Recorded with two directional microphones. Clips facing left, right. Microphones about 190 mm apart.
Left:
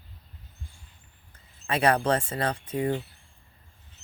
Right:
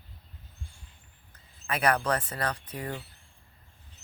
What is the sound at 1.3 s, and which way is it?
Speech, 30° left (ahead or behind).